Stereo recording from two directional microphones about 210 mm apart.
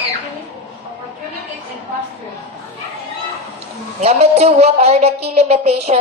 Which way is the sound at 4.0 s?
30° right (ahead or behind).